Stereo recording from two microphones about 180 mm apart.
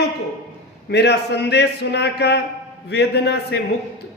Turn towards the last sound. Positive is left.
turn(degrees=65)  # may be behind; listen again after turning